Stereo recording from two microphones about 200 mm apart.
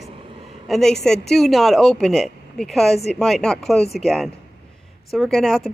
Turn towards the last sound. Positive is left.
turn(degrees=0)  # may be behind; listen again after turning